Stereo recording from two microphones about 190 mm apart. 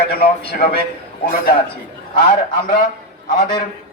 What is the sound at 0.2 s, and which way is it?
Speech, 55° left (ahead or behind).